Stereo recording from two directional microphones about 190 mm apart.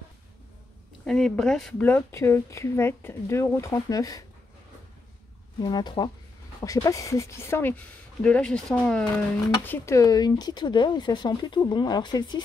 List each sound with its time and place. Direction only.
1.0 s a woman's voice: 5° left (ahead or behind); by 4.2 s 20° left (ahead or behind)
5.6 s a woman's voice: 20° left (ahead or behind); by 9.2 s centre (ahead or behind)
9.7 s speech: 15° left (ahead or behind)